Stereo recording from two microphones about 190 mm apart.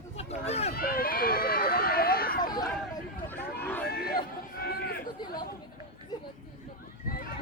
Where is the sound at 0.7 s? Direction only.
50° left (ahead or behind).